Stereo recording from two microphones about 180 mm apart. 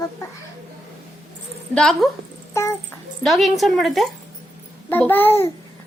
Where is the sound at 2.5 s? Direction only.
15° left (ahead or behind).